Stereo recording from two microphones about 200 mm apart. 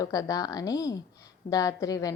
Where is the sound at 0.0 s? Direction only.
15° left (ahead or behind).